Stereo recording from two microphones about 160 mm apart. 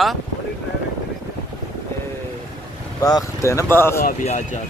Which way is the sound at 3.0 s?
20° left (ahead or behind).